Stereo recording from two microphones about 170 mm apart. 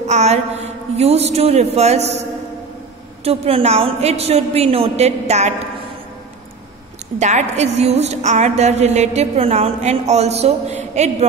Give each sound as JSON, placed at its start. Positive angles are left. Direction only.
{"t": 0.0, "sound": "a sound", "side_deg": -40}
{"t": 0.9, "sound": "a woman's voice", "side_deg": -40}
{"t": 3.3, "sound": "a woman's voice", "side_deg": -35}
{"t": 7.2, "sound": "a woman's voice", "side_deg": -45}